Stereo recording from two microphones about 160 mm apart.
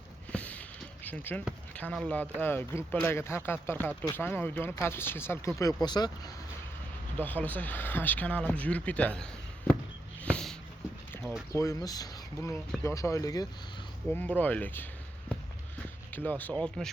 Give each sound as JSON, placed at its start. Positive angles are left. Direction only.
{"t": 0.3, "sound": "a sound", "side_deg": 10}
{"t": 1.0, "sound": "speech", "side_deg": 10}
{"t": 7.2, "sound": "speech", "side_deg": 10}
{"t": 10.2, "sound": "a sound", "side_deg": 5}
{"t": 11.2, "sound": "speech", "side_deg": -5}
{"t": 11.5, "sound": "speech", "side_deg": 20}
{"t": 14.1, "sound": "speech", "side_deg": 10}
{"t": 16.1, "sound": "speech", "side_deg": 10}